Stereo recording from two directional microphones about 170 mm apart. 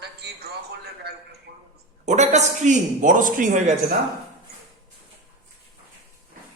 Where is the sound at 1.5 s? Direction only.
75° right (ahead or behind).